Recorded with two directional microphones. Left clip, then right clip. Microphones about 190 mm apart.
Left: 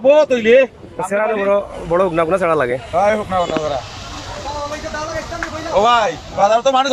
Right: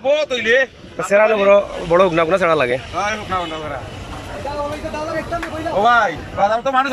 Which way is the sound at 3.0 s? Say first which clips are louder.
Left 9 dB; 25° left (ahead or behind).